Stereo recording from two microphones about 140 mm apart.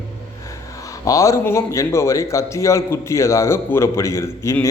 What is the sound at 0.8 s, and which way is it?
A man's voice, 25° left (ahead or behind).